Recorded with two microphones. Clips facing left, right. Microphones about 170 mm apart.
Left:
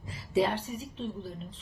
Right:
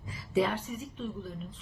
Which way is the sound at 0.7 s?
30° left (ahead or behind).